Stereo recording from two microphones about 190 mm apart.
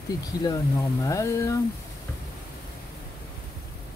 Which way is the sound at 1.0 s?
15° left (ahead or behind).